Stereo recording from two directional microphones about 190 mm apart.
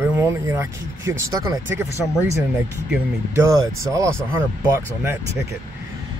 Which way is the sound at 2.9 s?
15° right (ahead or behind).